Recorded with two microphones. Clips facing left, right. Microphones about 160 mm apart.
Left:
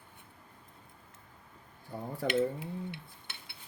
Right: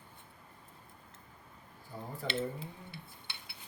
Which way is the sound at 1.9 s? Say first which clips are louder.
Left 5 dB; 60° left (ahead or behind).